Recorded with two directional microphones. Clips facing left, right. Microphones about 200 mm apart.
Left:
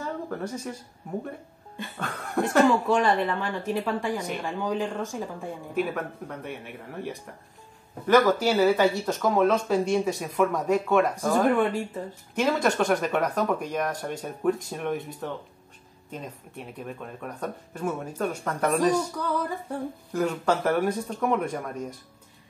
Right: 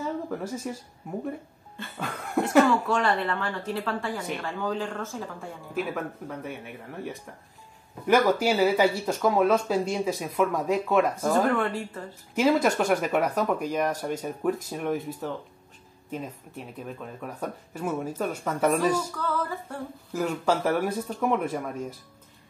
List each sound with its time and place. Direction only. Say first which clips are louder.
0.0 s a sound: right 1 dB; 5° right (ahead or behind)
2.0 s speech: right 1 dB; centre (ahead or behind)
2.4 s speech: even; 15° left (ahead or behind)
5.8 s speech: left 2 dB; centre (ahead or behind)
11.5 s speech: left 3 dB; 15° left (ahead or behind)
12.4 s speech: right 2 dB; 5° right (ahead or behind)
16.8 s speech: left 1 dB; 5° right (ahead or behind)
19.1 s speech: left 1 dB; 15° left (ahead or behind)
20.1 s speech: even; 5° right (ahead or behind)